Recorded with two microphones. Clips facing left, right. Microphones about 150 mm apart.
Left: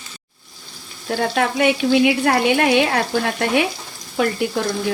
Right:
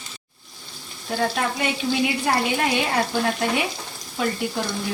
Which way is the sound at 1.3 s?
75° left (ahead or behind).